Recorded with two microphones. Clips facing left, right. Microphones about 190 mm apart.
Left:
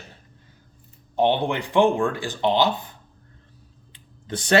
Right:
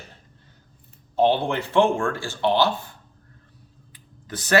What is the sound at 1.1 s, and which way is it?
Speech, 15° left (ahead or behind).